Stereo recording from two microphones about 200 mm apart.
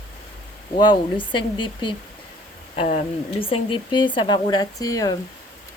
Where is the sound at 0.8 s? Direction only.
25° left (ahead or behind).